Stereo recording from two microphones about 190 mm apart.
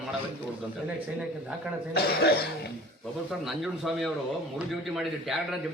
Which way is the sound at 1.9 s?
55° left (ahead or behind).